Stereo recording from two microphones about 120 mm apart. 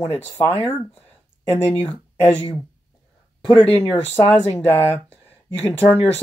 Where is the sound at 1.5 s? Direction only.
20° right (ahead or behind).